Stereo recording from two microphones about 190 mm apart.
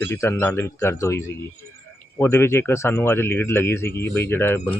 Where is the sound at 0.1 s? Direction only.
15° left (ahead or behind).